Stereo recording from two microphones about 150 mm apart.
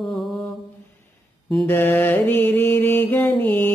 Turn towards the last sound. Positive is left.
turn(degrees=10)  # may be behind; listen again after turning